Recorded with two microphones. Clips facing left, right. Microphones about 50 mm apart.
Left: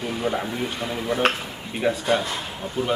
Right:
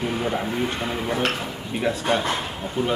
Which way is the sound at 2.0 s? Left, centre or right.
Right.